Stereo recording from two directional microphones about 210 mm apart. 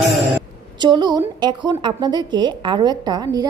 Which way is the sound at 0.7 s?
20° right (ahead or behind).